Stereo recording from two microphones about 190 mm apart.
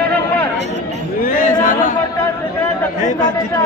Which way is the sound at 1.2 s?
45° left (ahead or behind).